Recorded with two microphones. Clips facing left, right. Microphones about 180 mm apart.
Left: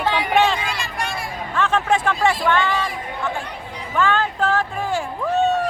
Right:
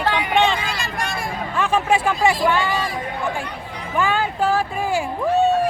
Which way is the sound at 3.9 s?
10° right (ahead or behind).